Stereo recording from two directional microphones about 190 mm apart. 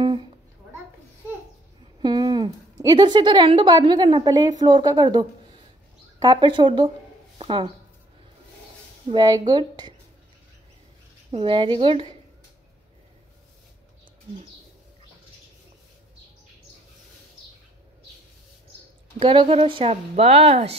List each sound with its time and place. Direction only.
0.0 s a sound: 25° right (ahead or behind)
2.0 s a woman's voice: 20° right (ahead or behind)
9.1 s a woman's voice: 20° right (ahead or behind)
11.3 s a woman's voice: 25° right (ahead or behind)
19.1 s speech: 30° right (ahead or behind)